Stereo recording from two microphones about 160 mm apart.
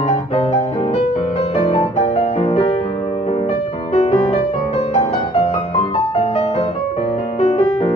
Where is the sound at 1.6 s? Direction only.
35° left (ahead or behind).